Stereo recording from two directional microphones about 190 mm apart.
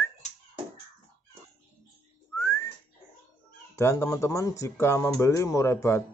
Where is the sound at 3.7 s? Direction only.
15° left (ahead or behind).